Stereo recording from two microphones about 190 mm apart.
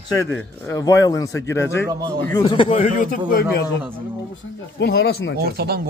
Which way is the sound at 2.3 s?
25° left (ahead or behind).